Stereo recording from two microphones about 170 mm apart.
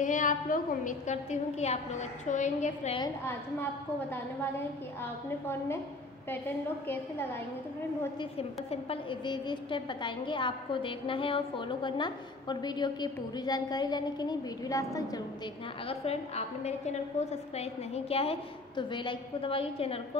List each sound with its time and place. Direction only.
0.0 s a woman's voice: 50° left (ahead or behind)
8.2 s a woman's voice: 35° left (ahead or behind); by 15.0 s 20° left (ahead or behind)
15.9 s a woman's voice: 35° left (ahead or behind)